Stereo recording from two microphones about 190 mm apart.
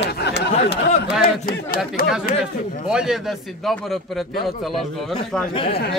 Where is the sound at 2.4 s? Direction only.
5° right (ahead or behind).